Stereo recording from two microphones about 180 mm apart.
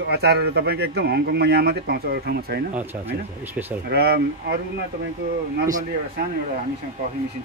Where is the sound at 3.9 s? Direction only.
60° right (ahead or behind).